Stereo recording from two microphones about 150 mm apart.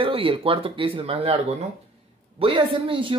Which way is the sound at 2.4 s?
35° right (ahead or behind).